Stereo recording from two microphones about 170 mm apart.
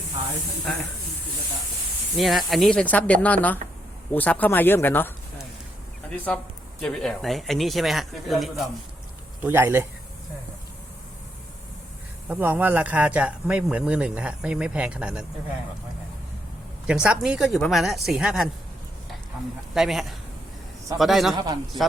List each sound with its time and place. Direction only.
2.1 s speech: centre (ahead or behind)
9.4 s speech: 10° right (ahead or behind)
12.3 s speech: 10° right (ahead or behind)
16.8 s speech: 5° right (ahead or behind)
19.7 s speech: centre (ahead or behind)
21.3 s a man's voice: 25° right (ahead or behind)